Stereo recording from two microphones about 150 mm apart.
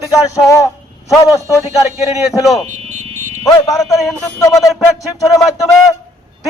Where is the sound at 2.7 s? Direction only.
50° right (ahead or behind).